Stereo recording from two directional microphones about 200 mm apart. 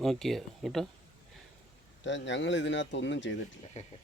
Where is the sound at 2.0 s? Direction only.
65° left (ahead or behind).